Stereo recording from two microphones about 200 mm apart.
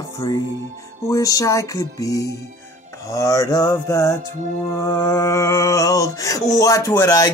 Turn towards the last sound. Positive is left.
turn(degrees=20)  # may be behind; listen again after turning